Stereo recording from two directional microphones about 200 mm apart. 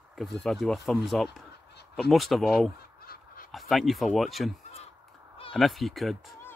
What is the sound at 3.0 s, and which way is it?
Goose, 50° left (ahead or behind).